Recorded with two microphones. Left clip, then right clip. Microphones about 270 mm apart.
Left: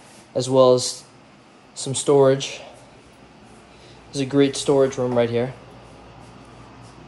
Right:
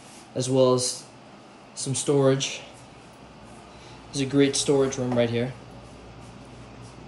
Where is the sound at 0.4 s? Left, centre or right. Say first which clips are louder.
Left 6 dB; left.